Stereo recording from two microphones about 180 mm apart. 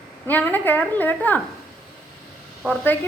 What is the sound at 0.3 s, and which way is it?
A woman's voice, 10° left (ahead or behind).